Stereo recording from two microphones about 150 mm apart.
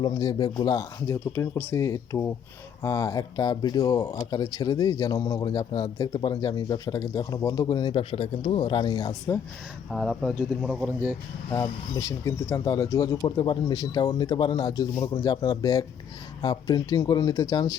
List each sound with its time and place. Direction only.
0.0 s speech: 25° left (ahead or behind)
9.9 s speech: centre (ahead or behind)
11.9 s speech: 20° left (ahead or behind)